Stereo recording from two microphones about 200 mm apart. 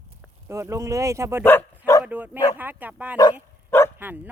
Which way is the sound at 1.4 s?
10° left (ahead or behind).